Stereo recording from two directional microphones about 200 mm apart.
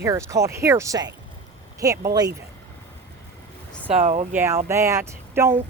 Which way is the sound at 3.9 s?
35° right (ahead or behind).